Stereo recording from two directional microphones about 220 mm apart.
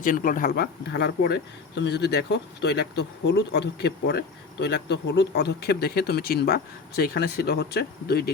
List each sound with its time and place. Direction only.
0.0 s speech: 35° left (ahead or behind)